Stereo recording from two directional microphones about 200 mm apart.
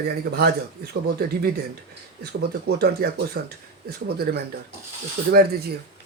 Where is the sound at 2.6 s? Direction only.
55° right (ahead or behind).